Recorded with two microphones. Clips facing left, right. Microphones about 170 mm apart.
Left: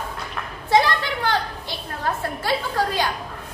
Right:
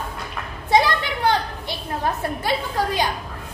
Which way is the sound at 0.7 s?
20° right (ahead or behind).